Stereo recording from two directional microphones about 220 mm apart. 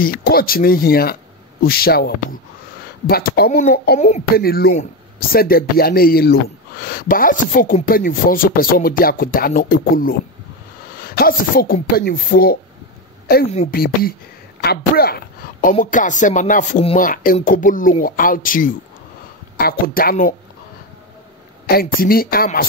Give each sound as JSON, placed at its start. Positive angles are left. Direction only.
{"t": 0.0, "sound": "a woman's voice", "side_deg": 40}
{"t": 13.5, "sound": "a woman's voice", "side_deg": 30}
{"t": 14.6, "sound": "a woman's voice", "side_deg": 45}
{"t": 21.6, "sound": "speech", "side_deg": 45}